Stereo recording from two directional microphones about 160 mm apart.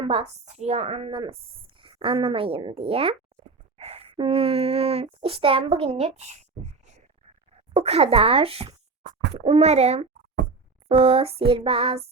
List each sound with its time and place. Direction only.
0.0 s a woman's voice: 40° right (ahead or behind)
3.8 s a sound: 40° right (ahead or behind)
5.2 s a woman's voice: 35° right (ahead or behind)
7.7 s a woman's voice: 40° right (ahead or behind)